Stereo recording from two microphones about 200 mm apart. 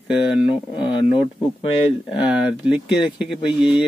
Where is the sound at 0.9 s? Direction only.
30° left (ahead or behind).